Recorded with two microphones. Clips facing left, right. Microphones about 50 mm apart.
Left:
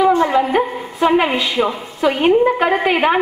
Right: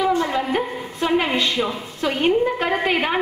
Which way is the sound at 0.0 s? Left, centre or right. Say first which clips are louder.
Left 7 dB; centre.